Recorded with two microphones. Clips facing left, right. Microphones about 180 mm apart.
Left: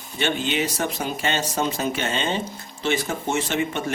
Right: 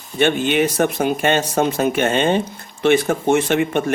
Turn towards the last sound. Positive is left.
turn(degrees=-55)  # may be behind; listen again after turning